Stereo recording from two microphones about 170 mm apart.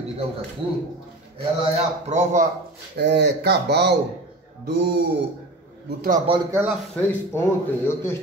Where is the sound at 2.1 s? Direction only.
45° right (ahead or behind).